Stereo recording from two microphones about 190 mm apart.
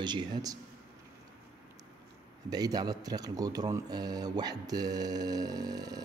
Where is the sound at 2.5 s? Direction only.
20° right (ahead or behind).